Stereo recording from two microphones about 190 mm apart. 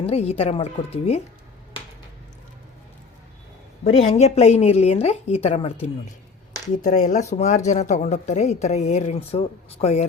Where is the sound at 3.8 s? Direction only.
35° left (ahead or behind).